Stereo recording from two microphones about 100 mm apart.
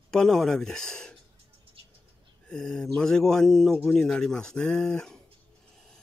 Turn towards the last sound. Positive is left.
turn(degrees=5)  # may be behind; listen again after turning